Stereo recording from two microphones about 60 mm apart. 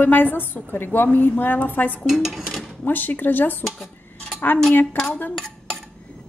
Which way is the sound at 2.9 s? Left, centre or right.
Left.